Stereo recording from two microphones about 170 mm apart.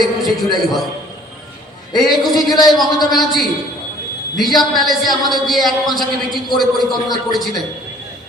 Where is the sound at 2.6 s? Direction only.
25° left (ahead or behind).